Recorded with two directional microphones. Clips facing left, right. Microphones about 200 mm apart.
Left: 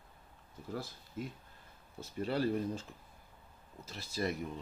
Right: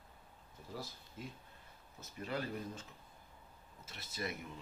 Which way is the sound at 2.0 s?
30° left (ahead or behind).